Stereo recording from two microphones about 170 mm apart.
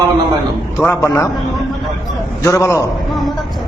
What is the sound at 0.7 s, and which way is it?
Speech, 10° left (ahead or behind).